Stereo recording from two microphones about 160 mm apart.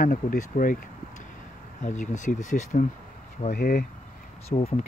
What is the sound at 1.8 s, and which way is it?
Speech, 50° left (ahead or behind).